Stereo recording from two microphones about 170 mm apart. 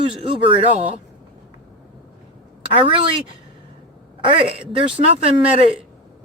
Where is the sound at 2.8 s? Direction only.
30° right (ahead or behind).